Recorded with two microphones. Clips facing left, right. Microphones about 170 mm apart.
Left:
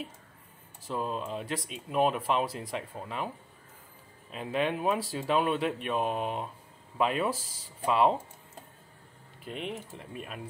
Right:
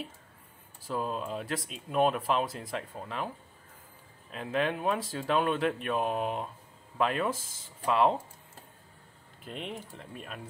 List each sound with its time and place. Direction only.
0.8 s speech: centre (ahead or behind)
4.3 s speech: 5° left (ahead or behind)
9.4 s speech: centre (ahead or behind)